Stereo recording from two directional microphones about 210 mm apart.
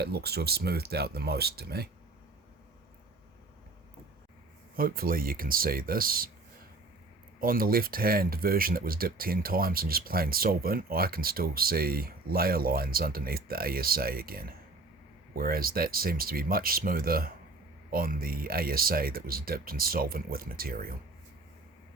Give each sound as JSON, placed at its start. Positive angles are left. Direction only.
{"t": 0.0, "sound": "speech", "side_deg": -50}
{"t": 4.8, "sound": "speech", "side_deg": -45}
{"t": 7.3, "sound": "speech", "side_deg": -45}